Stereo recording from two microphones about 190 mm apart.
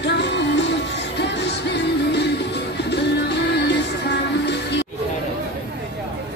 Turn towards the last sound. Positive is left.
turn(degrees=65)  # may be behind; listen again after turning